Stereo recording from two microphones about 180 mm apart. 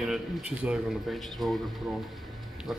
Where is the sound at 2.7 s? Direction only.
Centre (ahead or behind).